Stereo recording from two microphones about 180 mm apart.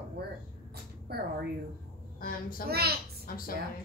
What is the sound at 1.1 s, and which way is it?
Speech, 60° right (ahead or behind).